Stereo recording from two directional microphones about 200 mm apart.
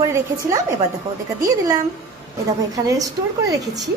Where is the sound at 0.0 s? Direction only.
15° right (ahead or behind).